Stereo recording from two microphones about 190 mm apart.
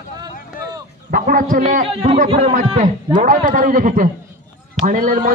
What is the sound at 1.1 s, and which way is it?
A man's voice, 50° right (ahead or behind).